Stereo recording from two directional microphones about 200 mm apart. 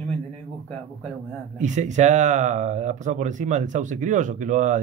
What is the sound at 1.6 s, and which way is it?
Speech, 35° right (ahead or behind).